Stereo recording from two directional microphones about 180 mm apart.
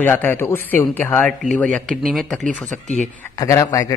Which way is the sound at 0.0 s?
10° left (ahead or behind).